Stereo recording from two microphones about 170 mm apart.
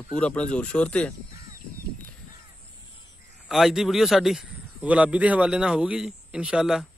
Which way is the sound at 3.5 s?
5° right (ahead or behind).